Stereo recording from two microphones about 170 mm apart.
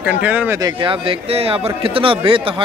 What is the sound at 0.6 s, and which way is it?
A man's voice, 30° right (ahead or behind).